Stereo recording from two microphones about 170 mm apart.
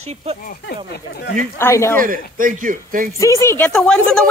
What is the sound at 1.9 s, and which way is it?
A man's voice, 55° right (ahead or behind).